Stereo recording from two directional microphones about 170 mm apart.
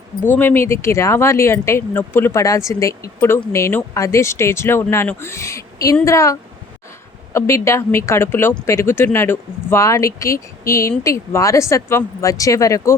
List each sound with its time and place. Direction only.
0.3 s speech: 10° left (ahead or behind)